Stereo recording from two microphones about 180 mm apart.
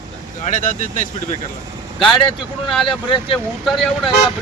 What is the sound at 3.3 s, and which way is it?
Speech, centre (ahead or behind).